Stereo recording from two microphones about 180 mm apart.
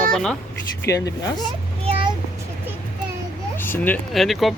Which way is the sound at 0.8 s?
20° left (ahead or behind).